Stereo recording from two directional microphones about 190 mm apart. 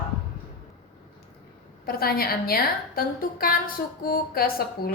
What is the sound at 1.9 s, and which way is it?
A woman's voice, 50° left (ahead or behind).